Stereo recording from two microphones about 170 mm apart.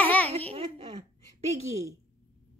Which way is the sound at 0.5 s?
35° right (ahead or behind).